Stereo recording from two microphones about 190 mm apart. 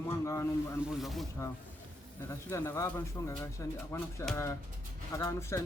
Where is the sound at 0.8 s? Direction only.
Centre (ahead or behind).